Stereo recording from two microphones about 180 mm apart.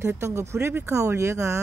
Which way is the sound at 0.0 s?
15° right (ahead or behind).